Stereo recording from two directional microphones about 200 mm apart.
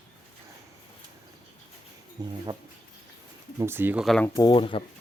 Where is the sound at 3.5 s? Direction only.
10° right (ahead or behind).